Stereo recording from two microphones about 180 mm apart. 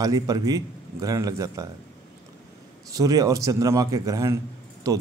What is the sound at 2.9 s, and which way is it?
A man's voice, 20° right (ahead or behind).